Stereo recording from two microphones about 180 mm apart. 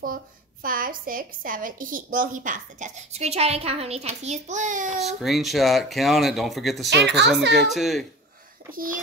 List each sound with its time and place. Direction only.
0.0 s a woman's voice: 50° right (ahead or behind)
4.9 s speech: centre (ahead or behind)
6.9 s a woman's voice: 70° right (ahead or behind)
7.5 s speech: centre (ahead or behind)